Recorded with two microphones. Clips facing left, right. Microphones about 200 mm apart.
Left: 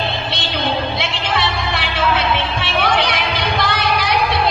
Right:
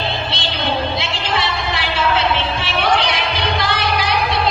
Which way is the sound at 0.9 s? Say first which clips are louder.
Even; 60° left (ahead or behind).